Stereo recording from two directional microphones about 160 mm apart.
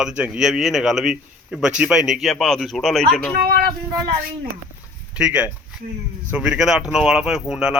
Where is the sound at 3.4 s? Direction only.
70° right (ahead or behind).